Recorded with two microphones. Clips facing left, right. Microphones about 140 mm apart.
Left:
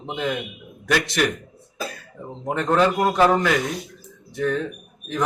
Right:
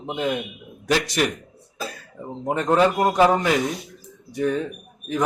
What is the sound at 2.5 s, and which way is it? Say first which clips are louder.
Speech: right 1 dB; 10° right (ahead or behind).